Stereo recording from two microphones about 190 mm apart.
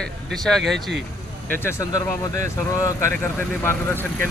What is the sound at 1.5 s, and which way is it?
Speech, 15° left (ahead or behind).